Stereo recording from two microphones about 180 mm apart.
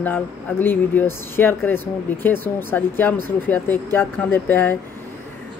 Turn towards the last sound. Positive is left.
turn(degrees=10)  # may be behind; listen again after turning